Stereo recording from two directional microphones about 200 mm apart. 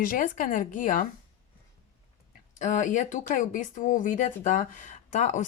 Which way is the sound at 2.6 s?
40° left (ahead or behind).